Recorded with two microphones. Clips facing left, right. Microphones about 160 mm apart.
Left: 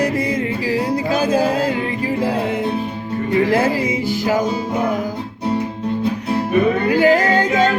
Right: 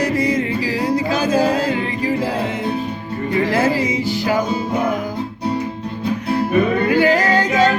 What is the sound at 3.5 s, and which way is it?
Music, 55° left (ahead or behind).